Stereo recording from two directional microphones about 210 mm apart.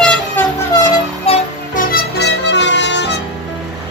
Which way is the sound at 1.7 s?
45° left (ahead or behind).